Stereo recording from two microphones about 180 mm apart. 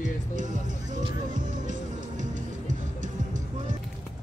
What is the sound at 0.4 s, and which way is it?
Music, 45° right (ahead or behind).